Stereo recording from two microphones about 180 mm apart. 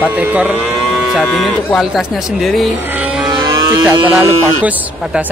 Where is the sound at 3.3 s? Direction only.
25° right (ahead or behind).